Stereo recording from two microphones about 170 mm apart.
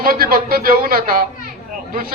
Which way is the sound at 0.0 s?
60° right (ahead or behind).